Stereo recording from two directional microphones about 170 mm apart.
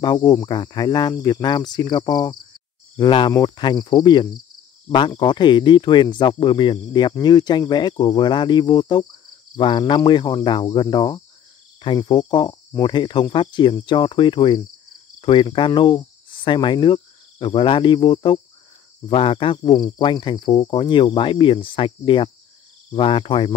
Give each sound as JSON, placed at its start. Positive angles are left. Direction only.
{"t": 0.0, "sound": "speech", "side_deg": 25}